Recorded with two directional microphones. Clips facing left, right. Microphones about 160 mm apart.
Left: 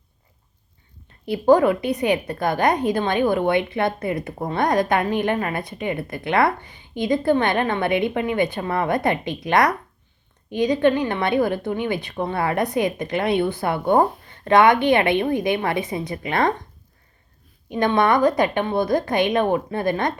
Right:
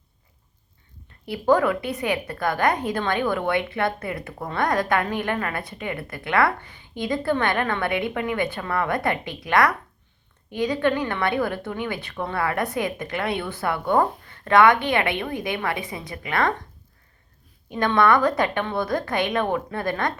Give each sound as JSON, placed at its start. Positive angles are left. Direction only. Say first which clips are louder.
{"t": 1.2, "sound": "a woman's voice", "louder": "left 4 dB", "side_deg": 25}
{"t": 17.7, "sound": "a woman's voice", "louder": "left 1 dB", "side_deg": 20}